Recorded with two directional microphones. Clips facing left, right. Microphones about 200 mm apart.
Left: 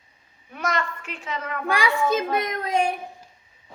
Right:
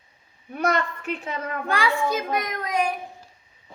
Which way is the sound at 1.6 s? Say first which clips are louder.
Left 1 dB; 15° left (ahead or behind).